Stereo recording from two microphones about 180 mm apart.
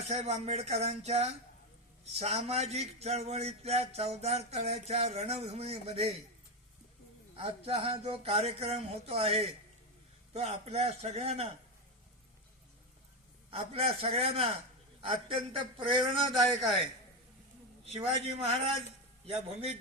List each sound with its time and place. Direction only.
0.0 s speech: 40° right (ahead or behind)
7.3 s speech: 35° right (ahead or behind)
13.5 s speech: 35° right (ahead or behind)
15.9 s a sound: 30° right (ahead or behind)
17.8 s speech: 35° right (ahead or behind)